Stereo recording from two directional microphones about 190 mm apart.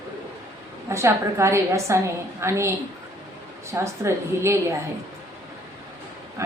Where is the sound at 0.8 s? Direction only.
15° right (ahead or behind).